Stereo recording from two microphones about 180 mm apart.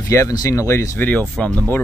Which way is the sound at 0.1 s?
20° left (ahead or behind).